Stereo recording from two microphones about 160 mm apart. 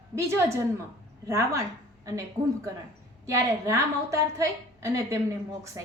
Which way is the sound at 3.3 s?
20° right (ahead or behind).